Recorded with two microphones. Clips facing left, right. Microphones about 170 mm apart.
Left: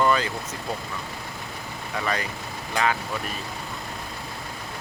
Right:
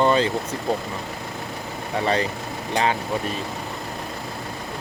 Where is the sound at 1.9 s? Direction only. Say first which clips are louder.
Right 6 dB; 30° right (ahead or behind).